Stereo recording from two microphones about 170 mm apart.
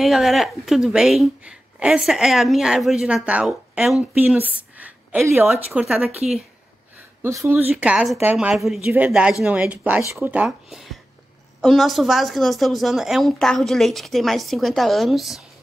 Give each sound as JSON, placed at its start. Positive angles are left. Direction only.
{"t": 0.0, "sound": "a woman's voice", "side_deg": 0}
{"t": 7.2, "sound": "speech", "side_deg": -15}
{"t": 7.7, "sound": "a woman's voice", "side_deg": -5}